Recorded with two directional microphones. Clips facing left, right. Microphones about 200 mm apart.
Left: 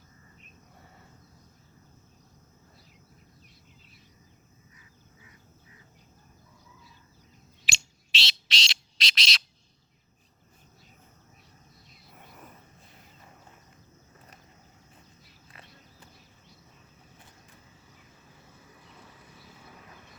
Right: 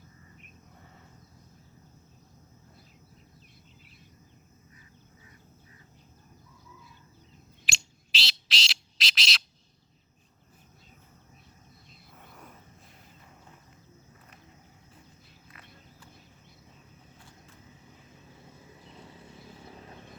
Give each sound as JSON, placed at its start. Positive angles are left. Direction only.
{"t": 7.6, "sound": "a sound", "side_deg": 0}
{"t": 12.3, "sound": "vehicle", "side_deg": 5}
{"t": 18.9, "sound": "vehicle", "side_deg": -25}